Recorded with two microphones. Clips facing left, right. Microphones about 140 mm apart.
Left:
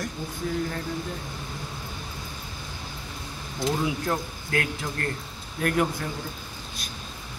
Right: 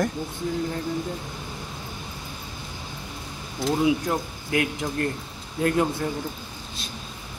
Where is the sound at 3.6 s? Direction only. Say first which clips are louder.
Right 2 dB; centre (ahead or behind).